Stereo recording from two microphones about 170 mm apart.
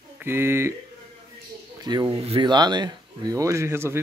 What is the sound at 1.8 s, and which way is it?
A man's voice, 25° right (ahead or behind).